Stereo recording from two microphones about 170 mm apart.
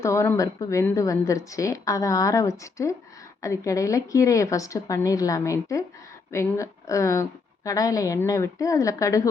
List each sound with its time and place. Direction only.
0.0 s a woman's voice: 15° left (ahead or behind)